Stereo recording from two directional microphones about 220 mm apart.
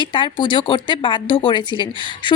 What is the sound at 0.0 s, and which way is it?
Speech, 20° left (ahead or behind).